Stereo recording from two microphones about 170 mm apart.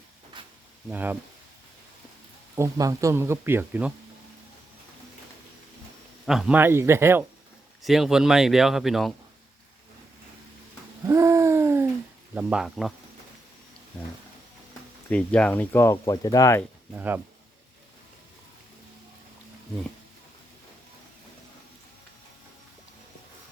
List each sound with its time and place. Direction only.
0.4 s a sound: 30° right (ahead or behind)
0.9 s speech: 10° right (ahead or behind)
2.6 s speech: 20° right (ahead or behind)
6.2 s speech: centre (ahead or behind)
6.6 s speech: 15° right (ahead or behind)
7.8 s speech: centre (ahead or behind)
11.0 s hoot: 15° right (ahead or behind)
12.3 s speech: 5° right (ahead or behind)
15.1 s speech: 5° left (ahead or behind)
16.9 s speech: 10° right (ahead or behind)